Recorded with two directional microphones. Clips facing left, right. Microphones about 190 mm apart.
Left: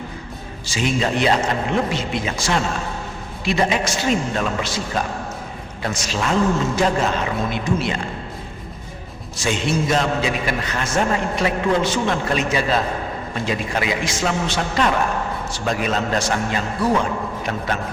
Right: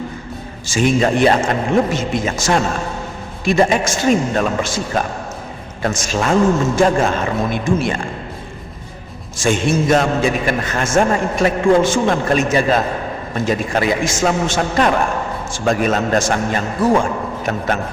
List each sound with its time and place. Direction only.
0.7 s a man's voice: 50° right (ahead or behind)
9.4 s a man's voice: 50° right (ahead or behind)